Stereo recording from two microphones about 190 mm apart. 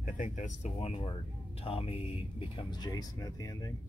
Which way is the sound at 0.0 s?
40° left (ahead or behind).